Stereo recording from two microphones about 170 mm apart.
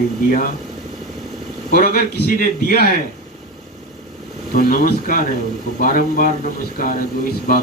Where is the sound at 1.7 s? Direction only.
55° left (ahead or behind).